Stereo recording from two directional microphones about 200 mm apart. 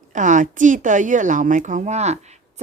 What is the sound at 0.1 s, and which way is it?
A woman's voice, 40° right (ahead or behind).